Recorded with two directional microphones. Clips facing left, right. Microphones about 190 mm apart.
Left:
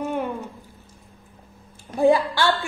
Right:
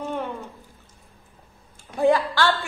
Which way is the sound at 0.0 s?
10° left (ahead or behind).